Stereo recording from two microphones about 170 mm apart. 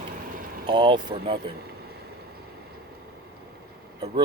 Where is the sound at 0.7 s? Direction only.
25° right (ahead or behind).